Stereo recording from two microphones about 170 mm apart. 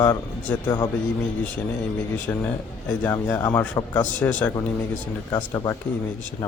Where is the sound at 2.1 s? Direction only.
10° left (ahead or behind).